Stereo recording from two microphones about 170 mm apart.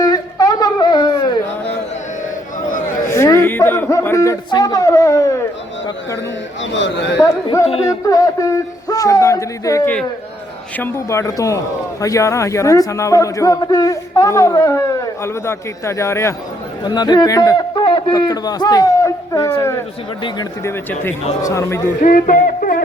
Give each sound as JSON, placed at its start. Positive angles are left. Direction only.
{"t": 0.0, "sound": "music", "side_deg": 25}
{"t": 3.1, "sound": "a sound", "side_deg": 15}
{"t": 6.6, "sound": "a man's voice", "side_deg": 90}
{"t": 7.2, "sound": "a man's voice", "side_deg": 20}
{"t": 22.0, "sound": "music", "side_deg": 50}